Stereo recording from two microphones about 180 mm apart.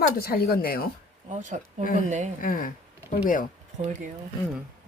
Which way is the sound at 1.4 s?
45° right (ahead or behind).